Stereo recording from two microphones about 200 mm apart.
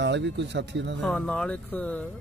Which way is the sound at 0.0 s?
60° right (ahead or behind).